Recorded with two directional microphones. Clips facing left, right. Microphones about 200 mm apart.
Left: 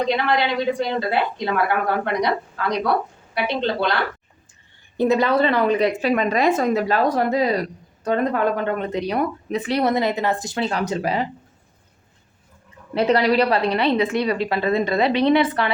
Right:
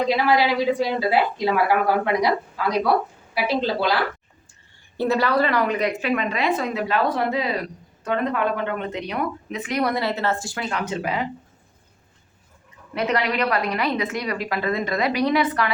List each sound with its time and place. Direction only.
0.1 s a woman's voice: 5° right (ahead or behind)
4.9 s speech: 20° left (ahead or behind)
10.7 s speech: 35° left (ahead or behind)
12.9 s a woman's voice: 30° left (ahead or behind)